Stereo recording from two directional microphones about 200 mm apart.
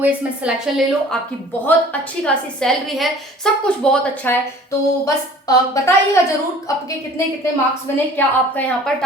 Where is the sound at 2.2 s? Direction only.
5° left (ahead or behind).